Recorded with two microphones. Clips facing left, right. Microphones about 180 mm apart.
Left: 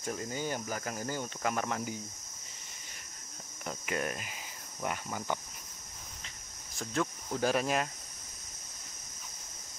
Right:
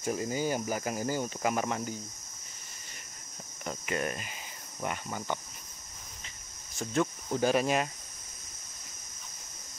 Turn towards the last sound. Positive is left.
turn(degrees=0)  # may be behind; listen again after turning